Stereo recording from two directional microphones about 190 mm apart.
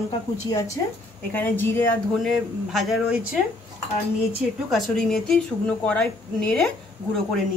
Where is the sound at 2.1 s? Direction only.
Centre (ahead or behind).